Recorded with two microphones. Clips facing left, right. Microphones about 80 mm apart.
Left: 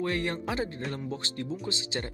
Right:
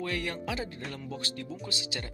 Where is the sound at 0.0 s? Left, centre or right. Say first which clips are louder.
Left 4 dB; left.